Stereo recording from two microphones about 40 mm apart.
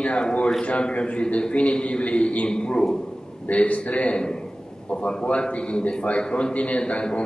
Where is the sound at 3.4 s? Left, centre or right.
Left.